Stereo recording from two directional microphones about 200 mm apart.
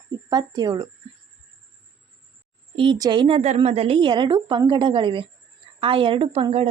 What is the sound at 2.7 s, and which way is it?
Speech, 25° right (ahead or behind).